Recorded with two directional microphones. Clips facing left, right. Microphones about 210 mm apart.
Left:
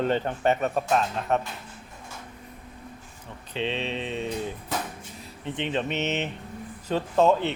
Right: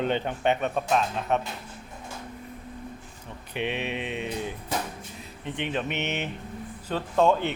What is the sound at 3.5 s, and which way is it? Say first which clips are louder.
Mantra: left 1 dB; 15° right (ahead or behind).